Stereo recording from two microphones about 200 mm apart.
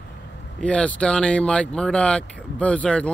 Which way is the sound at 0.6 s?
5° left (ahead or behind).